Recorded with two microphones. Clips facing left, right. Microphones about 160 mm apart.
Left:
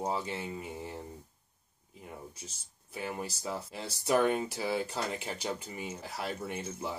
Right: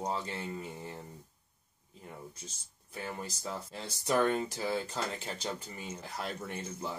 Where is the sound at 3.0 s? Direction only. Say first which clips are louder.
Left 3 dB; 10° left (ahead or behind).